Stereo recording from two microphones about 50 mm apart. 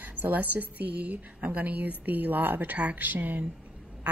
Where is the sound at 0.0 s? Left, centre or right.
Right.